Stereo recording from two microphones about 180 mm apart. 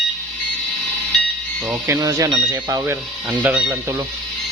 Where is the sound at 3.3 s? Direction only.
5° right (ahead or behind).